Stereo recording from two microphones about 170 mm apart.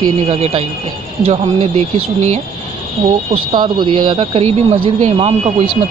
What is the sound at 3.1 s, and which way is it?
Speech, 25° right (ahead or behind).